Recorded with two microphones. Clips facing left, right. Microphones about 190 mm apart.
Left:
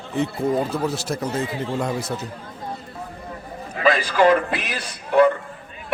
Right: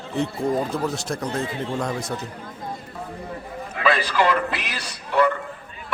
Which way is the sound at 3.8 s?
45° left (ahead or behind).